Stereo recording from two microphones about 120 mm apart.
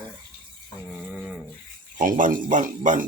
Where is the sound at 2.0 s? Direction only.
90° right.